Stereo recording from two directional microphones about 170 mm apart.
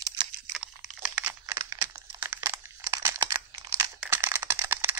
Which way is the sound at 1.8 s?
15° right (ahead or behind).